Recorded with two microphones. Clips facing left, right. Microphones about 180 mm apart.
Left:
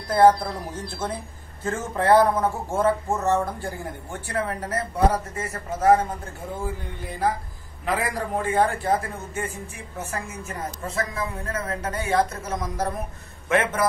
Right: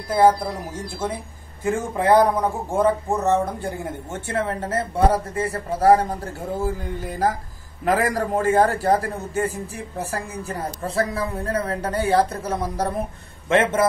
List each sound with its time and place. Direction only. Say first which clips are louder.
0.1 s a man's voice: even; 10° right (ahead or behind); by 13.8 s 25° right (ahead or behind)